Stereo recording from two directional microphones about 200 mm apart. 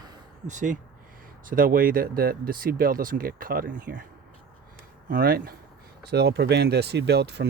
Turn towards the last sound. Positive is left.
turn(degrees=-55)  # may be behind; listen again after turning